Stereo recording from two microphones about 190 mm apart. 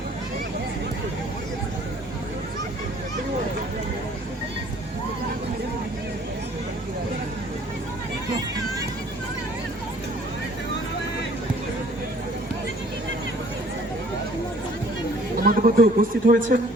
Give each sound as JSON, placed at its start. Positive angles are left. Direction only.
{"t": 15.4, "sound": "a man's voice", "side_deg": -50}